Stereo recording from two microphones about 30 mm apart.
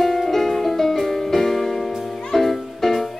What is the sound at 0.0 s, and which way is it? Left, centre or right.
Music, centre.